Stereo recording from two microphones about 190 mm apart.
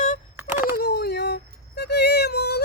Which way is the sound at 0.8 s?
60° left (ahead or behind).